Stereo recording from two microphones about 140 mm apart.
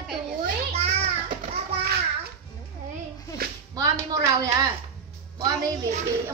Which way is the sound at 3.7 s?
25° right (ahead or behind).